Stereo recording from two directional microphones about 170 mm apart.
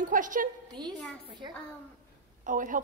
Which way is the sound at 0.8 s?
25° right (ahead or behind).